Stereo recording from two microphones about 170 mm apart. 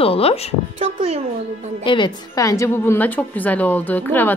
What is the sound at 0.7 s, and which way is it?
Speech, 35° right (ahead or behind).